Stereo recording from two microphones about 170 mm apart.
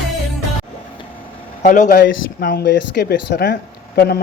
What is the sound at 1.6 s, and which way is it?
Speech, 50° left (ahead or behind).